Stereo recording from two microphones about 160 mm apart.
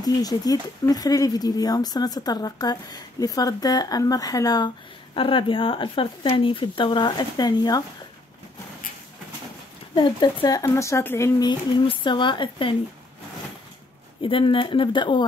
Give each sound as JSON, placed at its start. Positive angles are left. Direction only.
{"t": 0.0, "sound": "speech", "side_deg": 25}
{"t": 9.9, "sound": "speech", "side_deg": 25}
{"t": 14.2, "sound": "speech", "side_deg": 35}